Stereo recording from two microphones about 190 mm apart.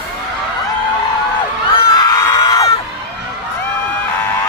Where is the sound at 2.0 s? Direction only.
20° left (ahead or behind).